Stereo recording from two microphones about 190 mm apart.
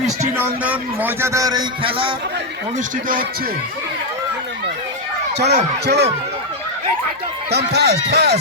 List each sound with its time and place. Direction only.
0.3 s speech: 10° right (ahead or behind); by 2.1 s 25° right (ahead or behind)
2.7 s speech: 45° right (ahead or behind)
5.4 s speech: 60° right (ahead or behind)
7.5 s speech: 60° right (ahead or behind)